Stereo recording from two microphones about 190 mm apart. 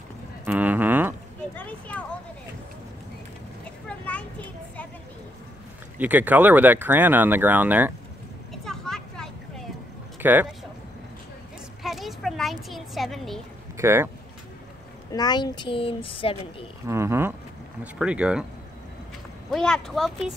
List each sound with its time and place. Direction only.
0.5 s a sound: 10° right (ahead or behind)
1.6 s speech: 5° left (ahead or behind)
4.0 s a sound: 5° left (ahead or behind)
5.9 s speech: 10° right (ahead or behind)
8.6 s vehicle: centre (ahead or behind)
10.2 s speech: 10° right (ahead or behind)
11.8 s a sound: centre (ahead or behind)
13.7 s speech: 10° right (ahead or behind)
15.1 s speech: 20° left (ahead or behind)
16.8 s speech: 15° right (ahead or behind)
19.5 s speech: 5° left (ahead or behind)